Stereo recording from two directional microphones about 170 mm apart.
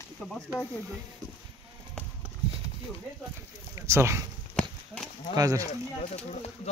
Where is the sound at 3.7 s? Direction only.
15° right (ahead or behind).